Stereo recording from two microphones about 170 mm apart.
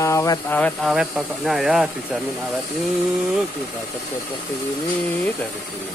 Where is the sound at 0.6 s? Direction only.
Centre (ahead or behind).